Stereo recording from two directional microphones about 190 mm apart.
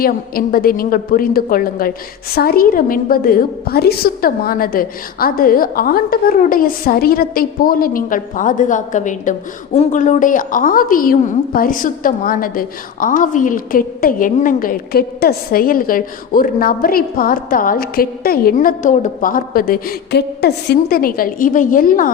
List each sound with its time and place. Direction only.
0.0 s a woman's voice: 50° left (ahead or behind)